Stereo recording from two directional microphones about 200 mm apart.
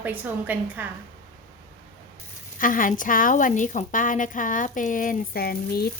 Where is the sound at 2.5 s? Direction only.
45° left (ahead or behind).